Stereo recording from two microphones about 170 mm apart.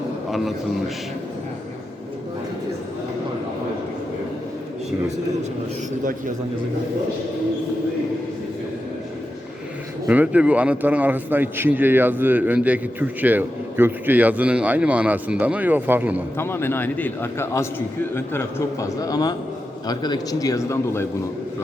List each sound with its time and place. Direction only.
0.3 s a man's voice: centre (ahead or behind)
10.1 s a man's voice: 10° right (ahead or behind)
16.4 s a man's voice: 15° left (ahead or behind)